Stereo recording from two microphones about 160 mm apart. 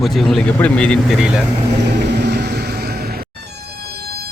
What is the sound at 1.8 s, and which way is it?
Vehicle, 90° right.